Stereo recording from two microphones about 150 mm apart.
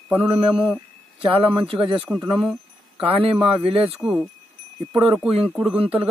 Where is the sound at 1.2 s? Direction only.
35° right (ahead or behind).